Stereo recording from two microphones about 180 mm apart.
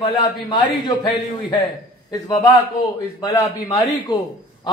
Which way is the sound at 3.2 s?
20° left (ahead or behind).